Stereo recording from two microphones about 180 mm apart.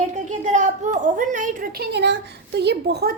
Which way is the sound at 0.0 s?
40° right (ahead or behind).